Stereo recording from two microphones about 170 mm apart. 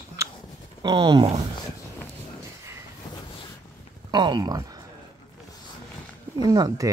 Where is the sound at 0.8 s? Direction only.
25° right (ahead or behind).